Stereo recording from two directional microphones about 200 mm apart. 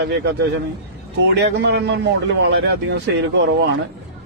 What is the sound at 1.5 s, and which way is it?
A man's voice, 60° right (ahead or behind).